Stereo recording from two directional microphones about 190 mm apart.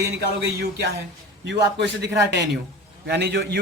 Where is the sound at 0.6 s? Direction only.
60° right (ahead or behind).